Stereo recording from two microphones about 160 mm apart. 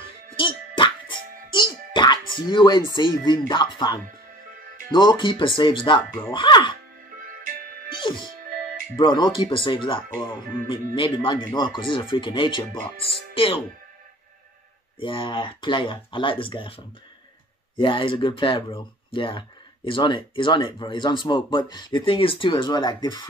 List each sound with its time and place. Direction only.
0.4 s music: 30° left (ahead or behind)
3.0 s speech: 25° left (ahead or behind)
8.0 s music: 30° left (ahead or behind)
8.9 s speech: 30° left (ahead or behind)
15.0 s speech: 30° left (ahead or behind)